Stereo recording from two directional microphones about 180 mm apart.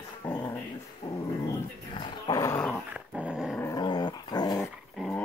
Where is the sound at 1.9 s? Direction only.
25° left (ahead or behind).